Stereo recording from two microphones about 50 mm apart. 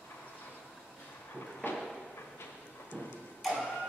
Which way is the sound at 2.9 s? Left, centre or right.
Left.